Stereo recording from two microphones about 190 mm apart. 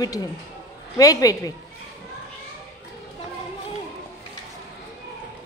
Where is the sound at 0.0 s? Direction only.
20° left (ahead or behind).